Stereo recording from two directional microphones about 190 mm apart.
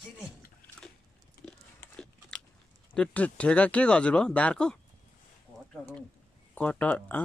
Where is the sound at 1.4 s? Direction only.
50° left (ahead or behind).